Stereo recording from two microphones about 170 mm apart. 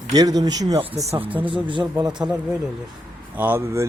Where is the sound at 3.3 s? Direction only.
10° right (ahead or behind).